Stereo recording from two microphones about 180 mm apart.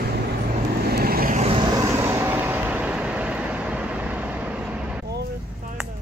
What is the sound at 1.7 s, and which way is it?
Vehicle, 15° right (ahead or behind).